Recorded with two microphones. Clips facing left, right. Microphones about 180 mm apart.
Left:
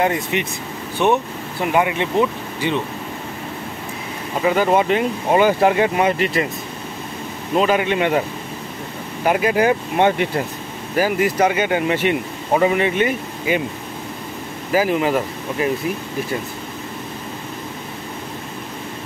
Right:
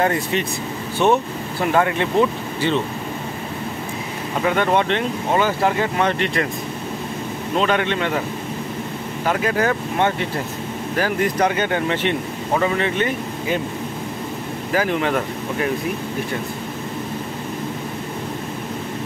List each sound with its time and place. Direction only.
0.0 s speech: 15° left (ahead or behind)
4.5 s speech: 5° left (ahead or behind)
7.5 s speech: 5° left (ahead or behind)
9.2 s speech: 15° left (ahead or behind)
14.7 s speech: 5° left (ahead or behind)